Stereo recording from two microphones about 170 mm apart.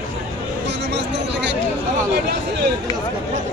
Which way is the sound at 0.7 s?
90° right.